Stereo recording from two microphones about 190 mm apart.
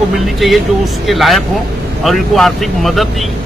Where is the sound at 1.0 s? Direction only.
Centre (ahead or behind).